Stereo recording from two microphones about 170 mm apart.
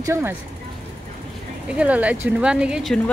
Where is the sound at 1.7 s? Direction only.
10° right (ahead or behind).